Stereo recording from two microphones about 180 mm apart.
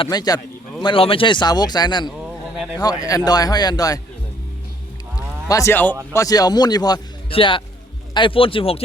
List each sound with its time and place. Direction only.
0.0 s speech: 20° left (ahead or behind)
5.5 s speech: 15° left (ahead or behind)